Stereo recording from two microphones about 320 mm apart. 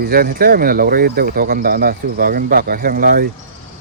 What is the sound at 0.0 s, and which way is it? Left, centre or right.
Speech, right.